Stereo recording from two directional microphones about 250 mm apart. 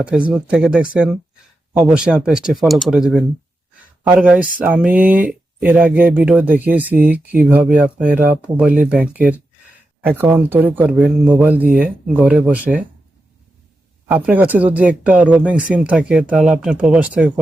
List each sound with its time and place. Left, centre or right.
0.0 s speech: centre
14.3 s speech: centre